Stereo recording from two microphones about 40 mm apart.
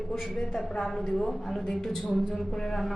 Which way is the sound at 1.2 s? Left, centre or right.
Centre.